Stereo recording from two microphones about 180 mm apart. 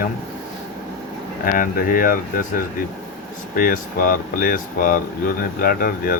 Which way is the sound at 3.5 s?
50° left (ahead or behind).